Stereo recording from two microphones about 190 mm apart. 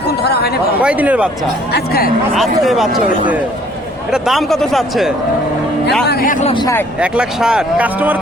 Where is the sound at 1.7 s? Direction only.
55° left (ahead or behind).